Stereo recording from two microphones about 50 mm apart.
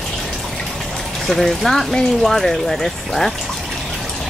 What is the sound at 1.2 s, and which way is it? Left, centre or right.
Speech, centre.